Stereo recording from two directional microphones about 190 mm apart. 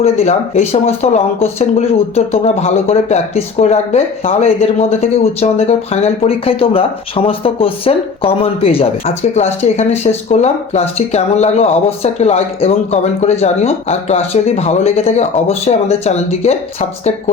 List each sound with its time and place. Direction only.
0.0 s speech: 35° left (ahead or behind)